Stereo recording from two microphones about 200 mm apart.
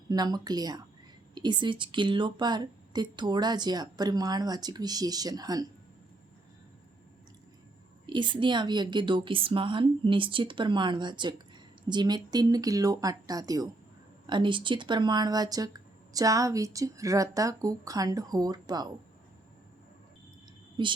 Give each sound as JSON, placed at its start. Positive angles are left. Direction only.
{"t": 0.1, "sound": "speech", "side_deg": -20}
{"t": 8.1, "sound": "speech", "side_deg": -25}
{"t": 20.8, "sound": "speech", "side_deg": -25}